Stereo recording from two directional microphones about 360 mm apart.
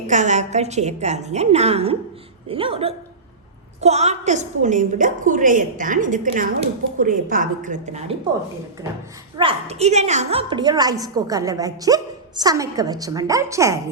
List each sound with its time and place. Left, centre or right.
0.1 s a woman's voice: centre
9.4 s a woman's voice: centre